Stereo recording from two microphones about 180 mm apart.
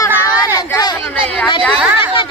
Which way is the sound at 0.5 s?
20° left (ahead or behind).